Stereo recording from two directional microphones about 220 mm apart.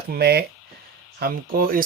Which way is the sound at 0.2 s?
45° right (ahead or behind).